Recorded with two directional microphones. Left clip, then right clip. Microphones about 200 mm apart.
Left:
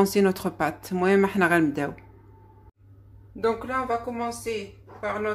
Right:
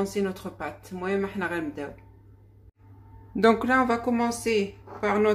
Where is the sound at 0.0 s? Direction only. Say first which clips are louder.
Left 7 dB; 45° left (ahead or behind).